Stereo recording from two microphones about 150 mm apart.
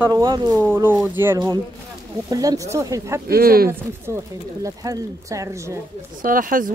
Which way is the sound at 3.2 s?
85° right.